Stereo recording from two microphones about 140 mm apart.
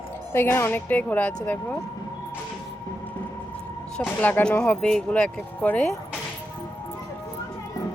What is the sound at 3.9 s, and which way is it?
Speech, 10° left (ahead or behind).